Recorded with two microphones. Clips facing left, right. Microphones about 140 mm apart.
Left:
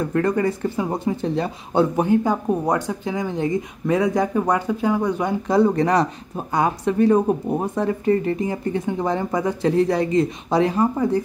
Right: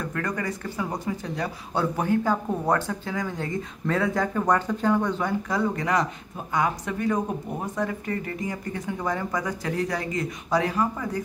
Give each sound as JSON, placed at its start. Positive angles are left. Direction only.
{"t": 0.0, "sound": "speech", "side_deg": 30}
{"t": 5.5, "sound": "speech", "side_deg": 30}